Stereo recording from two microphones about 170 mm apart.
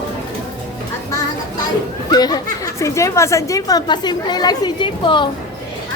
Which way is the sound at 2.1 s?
25° left (ahead or behind).